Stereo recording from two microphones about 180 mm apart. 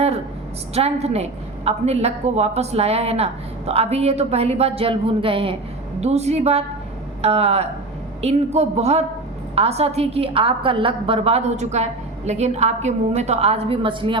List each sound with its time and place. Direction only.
0.7 s a woman's voice: 35° right (ahead or behind)